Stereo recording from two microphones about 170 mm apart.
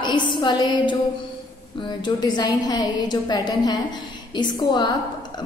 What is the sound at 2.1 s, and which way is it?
A woman's voice, 25° left (ahead or behind).